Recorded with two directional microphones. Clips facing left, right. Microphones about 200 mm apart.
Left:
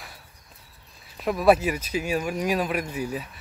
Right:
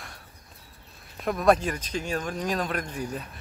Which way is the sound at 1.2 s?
5° left (ahead or behind).